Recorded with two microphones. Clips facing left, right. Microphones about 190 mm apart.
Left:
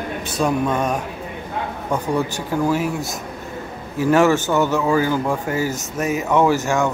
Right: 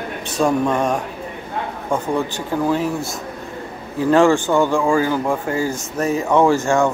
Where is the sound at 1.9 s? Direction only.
15° right (ahead or behind).